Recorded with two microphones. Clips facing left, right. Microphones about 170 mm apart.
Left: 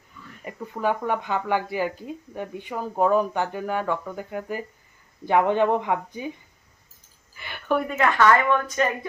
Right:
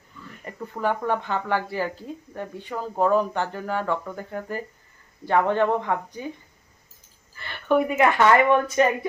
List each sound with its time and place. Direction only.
0.4 s speech: 10° left (ahead or behind)
7.3 s a sound: 10° left (ahead or behind)
7.7 s speech: 10° right (ahead or behind)